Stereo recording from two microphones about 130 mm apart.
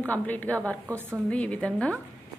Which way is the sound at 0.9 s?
20° right (ahead or behind).